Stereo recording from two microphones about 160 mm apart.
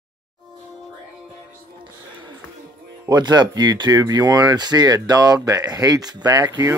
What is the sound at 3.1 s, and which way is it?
Speech, 25° right (ahead or behind).